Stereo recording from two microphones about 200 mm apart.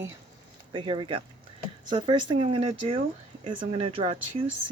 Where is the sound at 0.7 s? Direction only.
25° right (ahead or behind).